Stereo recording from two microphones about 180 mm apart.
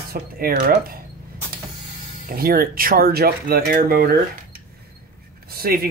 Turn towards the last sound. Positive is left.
turn(degrees=-55)  # may be behind; listen again after turning